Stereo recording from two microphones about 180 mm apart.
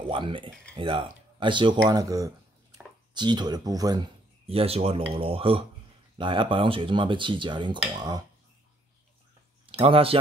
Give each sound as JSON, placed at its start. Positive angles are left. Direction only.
{"t": 0.1, "sound": "speech", "side_deg": -30}
{"t": 9.7, "sound": "speech", "side_deg": -30}